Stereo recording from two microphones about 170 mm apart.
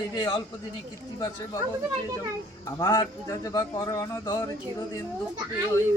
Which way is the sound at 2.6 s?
20° left (ahead or behind).